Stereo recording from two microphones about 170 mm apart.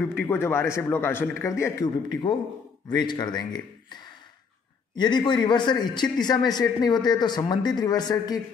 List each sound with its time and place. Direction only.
0.0 s a man's voice: 10° left (ahead or behind)
2.9 s speech: 25° left (ahead or behind)